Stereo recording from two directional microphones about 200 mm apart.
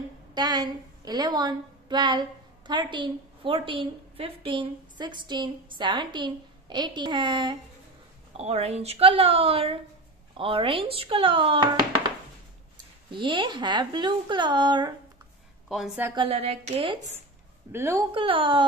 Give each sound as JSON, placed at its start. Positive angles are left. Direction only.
{"t": 0.3, "sound": "a woman's voice", "side_deg": -20}
{"t": 13.1, "sound": "speech", "side_deg": -25}
{"t": 15.7, "sound": "a woman's voice", "side_deg": 0}
{"t": 16.2, "sound": "speech", "side_deg": -30}
{"t": 17.7, "sound": "a woman's voice", "side_deg": -15}
{"t": 18.1, "sound": "speech", "side_deg": -25}